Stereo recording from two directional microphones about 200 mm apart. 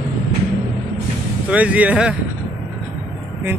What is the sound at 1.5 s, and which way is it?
Speech, 5° right (ahead or behind).